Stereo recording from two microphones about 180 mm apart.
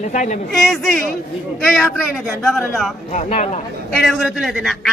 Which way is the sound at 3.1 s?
40° left (ahead or behind).